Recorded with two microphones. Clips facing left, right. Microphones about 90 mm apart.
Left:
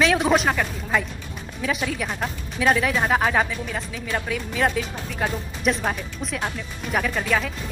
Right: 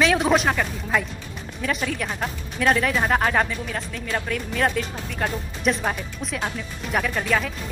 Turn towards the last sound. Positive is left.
turn(degrees=0)  # may be behind; listen again after turning